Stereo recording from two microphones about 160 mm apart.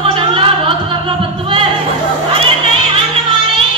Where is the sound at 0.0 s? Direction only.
35° right (ahead or behind).